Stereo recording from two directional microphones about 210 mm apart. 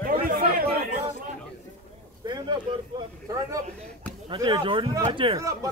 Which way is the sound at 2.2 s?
20° right (ahead or behind).